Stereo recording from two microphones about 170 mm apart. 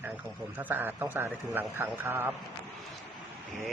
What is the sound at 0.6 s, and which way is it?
A man's voice, 10° right (ahead or behind).